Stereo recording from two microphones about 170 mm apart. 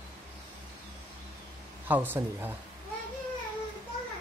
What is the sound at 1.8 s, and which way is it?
Speech, 10° right (ahead or behind).